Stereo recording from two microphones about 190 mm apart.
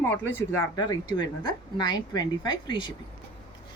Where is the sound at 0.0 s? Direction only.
10° left (ahead or behind).